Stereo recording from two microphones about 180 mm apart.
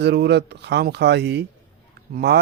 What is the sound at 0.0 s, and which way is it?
Speech, 70° right (ahead or behind).